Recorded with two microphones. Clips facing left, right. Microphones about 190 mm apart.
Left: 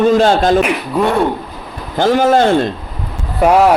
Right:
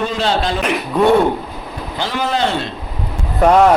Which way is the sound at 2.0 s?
45° left (ahead or behind).